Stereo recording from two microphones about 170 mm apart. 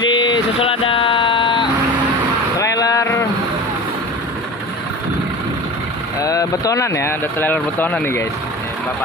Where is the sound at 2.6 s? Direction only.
20° left (ahead or behind).